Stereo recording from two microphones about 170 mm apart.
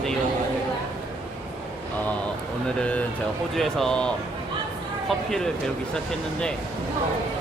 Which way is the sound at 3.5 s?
Centre (ahead or behind).